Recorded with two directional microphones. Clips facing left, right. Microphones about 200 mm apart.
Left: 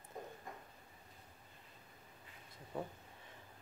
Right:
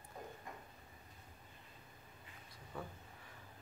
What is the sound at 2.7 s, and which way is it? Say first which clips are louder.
Speech: left 4 dB; 25° left (ahead or behind).